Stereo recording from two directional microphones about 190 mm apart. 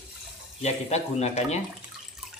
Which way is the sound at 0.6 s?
35° left (ahead or behind).